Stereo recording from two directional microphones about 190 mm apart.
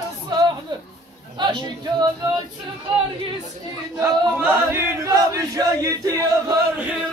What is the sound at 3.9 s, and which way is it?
Chant, 10° right (ahead or behind).